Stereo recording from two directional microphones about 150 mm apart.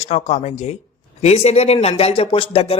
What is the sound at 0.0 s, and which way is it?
Speech, 45° left (ahead or behind).